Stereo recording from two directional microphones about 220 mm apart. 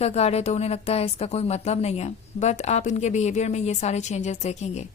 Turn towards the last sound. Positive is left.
turn(degrees=30)  # may be behind; listen again after turning